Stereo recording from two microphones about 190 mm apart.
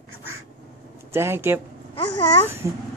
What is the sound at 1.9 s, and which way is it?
Speech, 25° left (ahead or behind).